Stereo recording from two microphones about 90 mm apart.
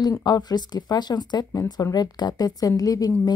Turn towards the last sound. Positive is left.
turn(degrees=45)  # may be behind; listen again after turning